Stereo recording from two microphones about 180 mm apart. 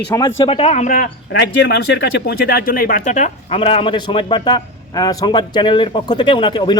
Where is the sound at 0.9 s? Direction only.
65° left (ahead or behind).